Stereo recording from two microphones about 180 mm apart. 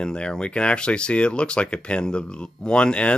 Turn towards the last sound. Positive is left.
turn(degrees=5)  # may be behind; listen again after turning